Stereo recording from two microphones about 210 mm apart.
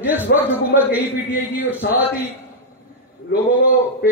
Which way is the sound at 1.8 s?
50° left (ahead or behind).